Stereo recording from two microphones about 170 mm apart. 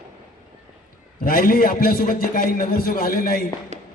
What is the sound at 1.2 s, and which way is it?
A man's voice, 55° left (ahead or behind).